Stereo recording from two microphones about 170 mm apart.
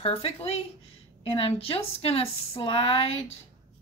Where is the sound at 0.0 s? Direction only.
35° left (ahead or behind).